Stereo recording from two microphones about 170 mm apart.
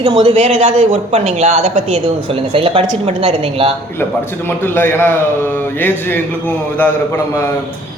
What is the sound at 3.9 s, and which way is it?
A man's voice, 15° left (ahead or behind).